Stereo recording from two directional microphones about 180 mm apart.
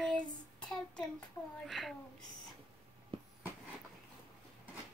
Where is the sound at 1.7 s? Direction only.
Centre (ahead or behind).